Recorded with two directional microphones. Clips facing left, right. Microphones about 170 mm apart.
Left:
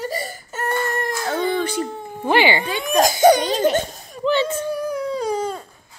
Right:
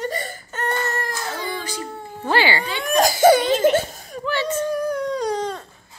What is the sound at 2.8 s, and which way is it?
Speech, centre (ahead or behind).